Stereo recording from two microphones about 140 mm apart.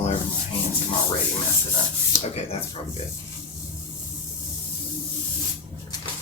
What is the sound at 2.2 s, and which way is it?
Speech, 45° left (ahead or behind).